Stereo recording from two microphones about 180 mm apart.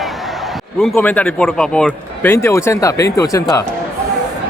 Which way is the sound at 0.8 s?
5° left (ahead or behind).